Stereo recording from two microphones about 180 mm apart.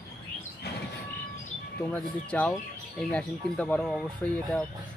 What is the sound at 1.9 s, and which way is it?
Speech, 5° left (ahead or behind).